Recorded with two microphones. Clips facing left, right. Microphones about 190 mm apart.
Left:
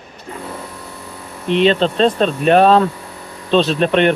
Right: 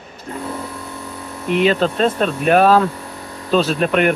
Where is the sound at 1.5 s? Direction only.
25° left (ahead or behind).